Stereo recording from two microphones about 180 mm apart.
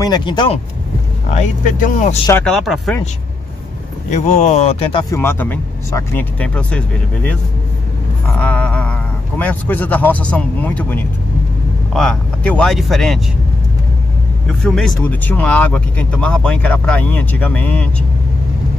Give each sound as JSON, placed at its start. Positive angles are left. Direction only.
{"t": 0.0, "sound": "speech", "side_deg": 25}
{"t": 1.3, "sound": "speech", "side_deg": 45}
{"t": 2.4, "sound": "speech", "side_deg": 0}
{"t": 4.1, "sound": "speech", "side_deg": 40}
{"t": 5.1, "sound": "speech", "side_deg": 10}
{"t": 8.4, "sound": "a sound", "side_deg": 5}
{"t": 9.4, "sound": "speech", "side_deg": 10}
{"t": 14.6, "sound": "speech", "side_deg": 0}